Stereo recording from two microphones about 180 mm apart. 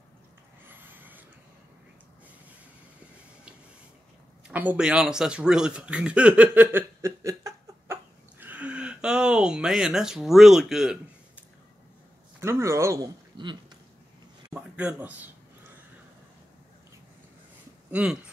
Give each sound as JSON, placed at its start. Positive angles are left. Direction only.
{"t": 0.7, "sound": "vehicle", "side_deg": -10}
{"t": 4.5, "sound": "a sound", "side_deg": -5}
{"t": 12.4, "sound": "speech", "side_deg": -15}
{"t": 14.5, "sound": "speech", "side_deg": -10}
{"t": 17.9, "sound": "speech", "side_deg": -5}